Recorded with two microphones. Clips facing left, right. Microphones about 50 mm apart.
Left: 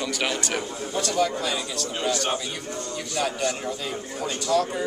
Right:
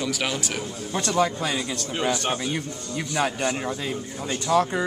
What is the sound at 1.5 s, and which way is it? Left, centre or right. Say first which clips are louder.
A man's voice: right 1 dB; right.